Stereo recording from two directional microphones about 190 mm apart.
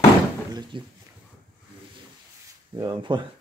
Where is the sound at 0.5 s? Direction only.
25° right (ahead or behind).